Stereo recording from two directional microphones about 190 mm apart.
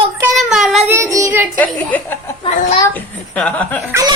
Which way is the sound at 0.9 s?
15° right (ahead or behind).